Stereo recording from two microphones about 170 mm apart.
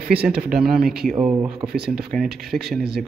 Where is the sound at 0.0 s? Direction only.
70° right (ahead or behind).